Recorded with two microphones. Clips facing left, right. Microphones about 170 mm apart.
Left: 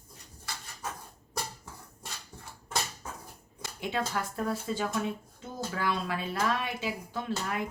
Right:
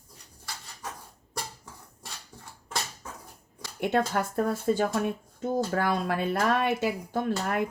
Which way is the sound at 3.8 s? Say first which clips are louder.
Right 6 dB; 55° right (ahead or behind).